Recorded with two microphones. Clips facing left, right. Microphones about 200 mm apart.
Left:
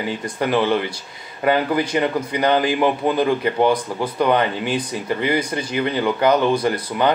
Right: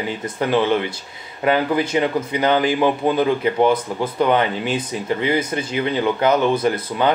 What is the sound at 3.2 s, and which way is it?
Speech, 20° right (ahead or behind).